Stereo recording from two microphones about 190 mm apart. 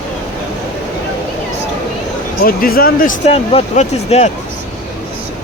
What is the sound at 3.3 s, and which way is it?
Speech, 35° left (ahead or behind).